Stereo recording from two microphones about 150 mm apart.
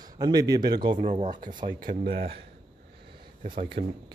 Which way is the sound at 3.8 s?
50° right (ahead or behind).